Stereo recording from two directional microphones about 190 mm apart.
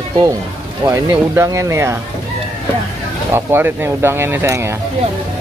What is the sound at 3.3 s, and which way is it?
Speech, 10° right (ahead or behind).